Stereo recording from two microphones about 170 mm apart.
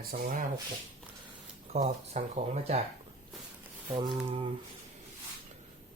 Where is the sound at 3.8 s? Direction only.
30° right (ahead or behind).